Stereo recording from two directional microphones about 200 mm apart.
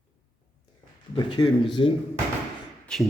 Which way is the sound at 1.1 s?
25° left (ahead or behind).